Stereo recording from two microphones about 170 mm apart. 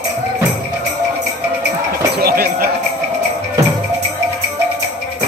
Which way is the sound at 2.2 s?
60° right (ahead or behind).